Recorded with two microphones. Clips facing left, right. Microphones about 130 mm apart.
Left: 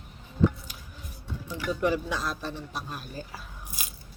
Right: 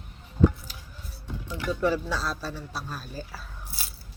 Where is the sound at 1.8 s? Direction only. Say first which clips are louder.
Right 1 dB; 15° left (ahead or behind).